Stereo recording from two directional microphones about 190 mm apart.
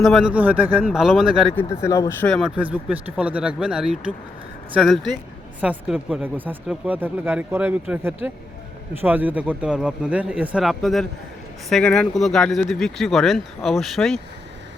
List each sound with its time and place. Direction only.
0.0 s speech: centre (ahead or behind)
1.8 s speech: 15° left (ahead or behind)
2.2 s speech: 5° left (ahead or behind)